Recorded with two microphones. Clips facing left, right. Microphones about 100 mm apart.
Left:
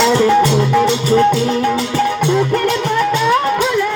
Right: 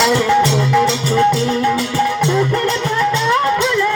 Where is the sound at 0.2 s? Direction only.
10° left (ahead or behind).